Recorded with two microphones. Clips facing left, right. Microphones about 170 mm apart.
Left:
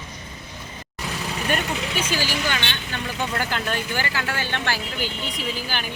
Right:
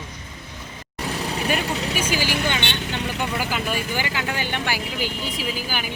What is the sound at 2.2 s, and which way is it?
Speech, 55° right (ahead or behind).